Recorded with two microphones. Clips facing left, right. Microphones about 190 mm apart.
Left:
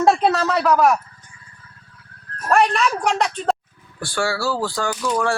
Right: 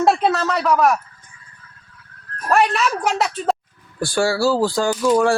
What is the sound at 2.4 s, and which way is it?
A man's voice, centre (ahead or behind).